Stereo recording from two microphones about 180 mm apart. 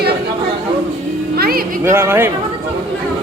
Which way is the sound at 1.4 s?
55° right (ahead or behind).